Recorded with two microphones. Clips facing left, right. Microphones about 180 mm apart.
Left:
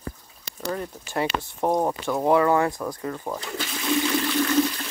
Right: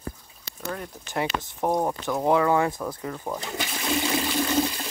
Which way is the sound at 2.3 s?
15° right (ahead or behind).